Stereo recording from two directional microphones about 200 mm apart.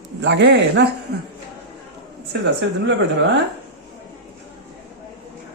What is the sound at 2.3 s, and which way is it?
Speech, 60° right (ahead or behind).